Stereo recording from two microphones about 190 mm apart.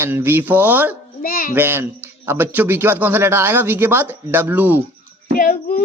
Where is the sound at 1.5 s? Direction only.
10° right (ahead or behind).